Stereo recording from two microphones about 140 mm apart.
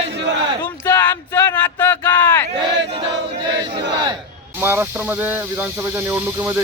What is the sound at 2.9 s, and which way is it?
Battle cry, 35° right (ahead or behind).